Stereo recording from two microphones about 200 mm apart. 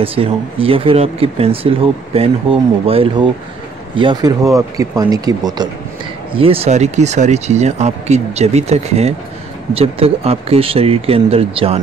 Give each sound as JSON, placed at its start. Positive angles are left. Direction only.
{"t": 0.0, "sound": "speech", "side_deg": -30}